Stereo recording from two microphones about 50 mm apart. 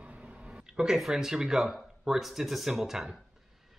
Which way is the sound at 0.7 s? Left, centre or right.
Centre.